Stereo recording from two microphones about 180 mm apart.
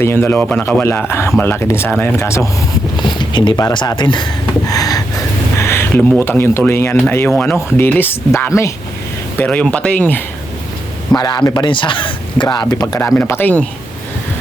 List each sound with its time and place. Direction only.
0.0 s speech: 15° left (ahead or behind)
3.1 s speech: 25° left (ahead or behind)
4.7 s a sound: 20° left (ahead or behind)
5.5 s speech: 15° left (ahead or behind)
11.2 s speech: 25° left (ahead or behind)